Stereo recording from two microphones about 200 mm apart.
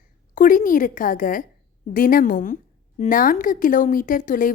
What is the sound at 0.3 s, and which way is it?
A woman's voice, 40° left (ahead or behind).